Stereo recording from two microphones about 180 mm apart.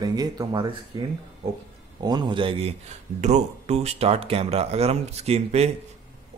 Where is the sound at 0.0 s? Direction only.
20° right (ahead or behind).